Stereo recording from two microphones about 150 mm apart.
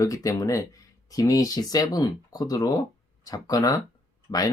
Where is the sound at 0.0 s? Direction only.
20° left (ahead or behind).